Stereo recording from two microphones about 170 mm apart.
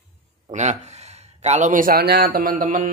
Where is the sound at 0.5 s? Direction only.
40° right (ahead or behind).